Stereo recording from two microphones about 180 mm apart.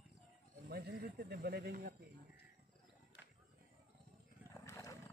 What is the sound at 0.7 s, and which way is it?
Speech, 60° right (ahead or behind).